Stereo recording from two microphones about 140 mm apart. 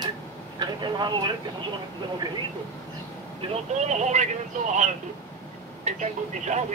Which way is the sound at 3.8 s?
55° right (ahead or behind).